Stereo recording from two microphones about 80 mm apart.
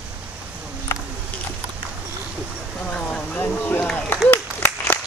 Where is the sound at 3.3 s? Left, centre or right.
Left.